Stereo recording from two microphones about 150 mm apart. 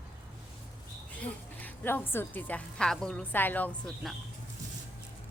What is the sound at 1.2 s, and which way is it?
A woman's voice, 15° left (ahead or behind).